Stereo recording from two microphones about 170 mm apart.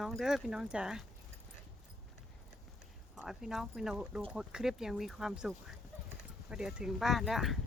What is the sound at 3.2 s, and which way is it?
Speech, 5° right (ahead or behind).